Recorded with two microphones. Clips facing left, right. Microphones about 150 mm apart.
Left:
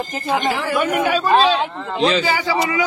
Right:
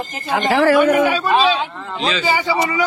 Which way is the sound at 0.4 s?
60° right (ahead or behind).